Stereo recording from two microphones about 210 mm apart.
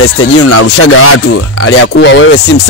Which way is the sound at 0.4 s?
90° left.